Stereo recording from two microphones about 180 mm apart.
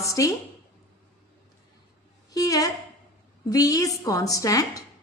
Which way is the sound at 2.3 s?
20° left (ahead or behind).